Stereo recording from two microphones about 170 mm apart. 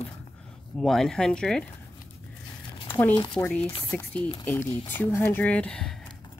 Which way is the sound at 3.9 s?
10° left (ahead or behind).